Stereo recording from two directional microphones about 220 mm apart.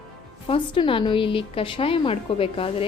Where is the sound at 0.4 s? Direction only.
25° left (ahead or behind).